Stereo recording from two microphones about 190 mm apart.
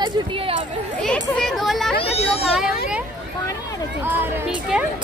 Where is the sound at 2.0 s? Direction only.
30° left (ahead or behind).